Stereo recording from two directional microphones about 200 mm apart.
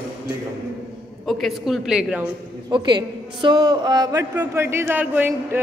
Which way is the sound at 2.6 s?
25° right (ahead or behind).